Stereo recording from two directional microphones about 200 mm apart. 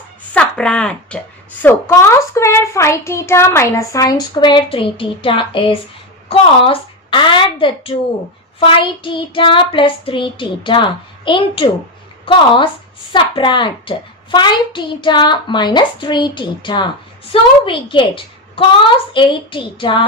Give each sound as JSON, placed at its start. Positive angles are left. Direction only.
{"t": 0.3, "sound": "a child's voice", "side_deg": 5}